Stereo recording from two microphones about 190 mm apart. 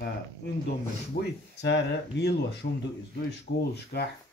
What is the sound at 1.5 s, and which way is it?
Speech, 65° left (ahead or behind).